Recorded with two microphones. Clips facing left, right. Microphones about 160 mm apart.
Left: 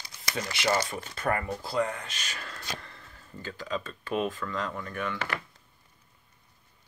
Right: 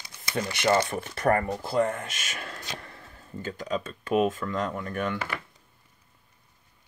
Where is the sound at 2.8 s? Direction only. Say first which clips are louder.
Right 3 dB; 45° right (ahead or behind).